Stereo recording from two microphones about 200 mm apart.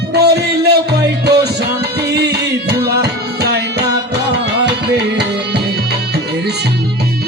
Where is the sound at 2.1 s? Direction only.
55° right (ahead or behind).